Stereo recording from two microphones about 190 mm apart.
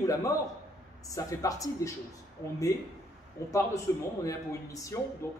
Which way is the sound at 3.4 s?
15° left (ahead or behind).